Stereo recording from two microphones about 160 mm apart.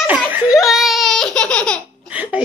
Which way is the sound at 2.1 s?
10° right (ahead or behind).